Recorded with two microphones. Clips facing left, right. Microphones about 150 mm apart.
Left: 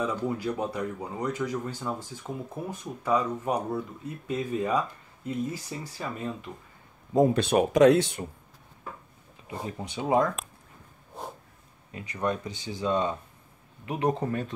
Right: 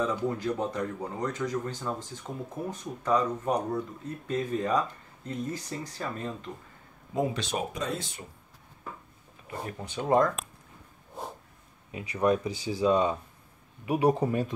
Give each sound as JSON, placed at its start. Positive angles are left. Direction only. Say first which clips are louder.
{"t": 0.0, "sound": "speech", "louder": "even", "side_deg": 10}
{"t": 7.3, "sound": "speech", "louder": "left 11 dB", "side_deg": 60}
{"t": 9.5, "sound": "speech", "louder": "left 2 dB", "side_deg": 15}
{"t": 11.9, "sound": "speech", "louder": "right 4 dB", "side_deg": -10}